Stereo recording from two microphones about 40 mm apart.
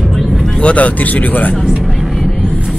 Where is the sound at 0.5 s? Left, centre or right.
Left.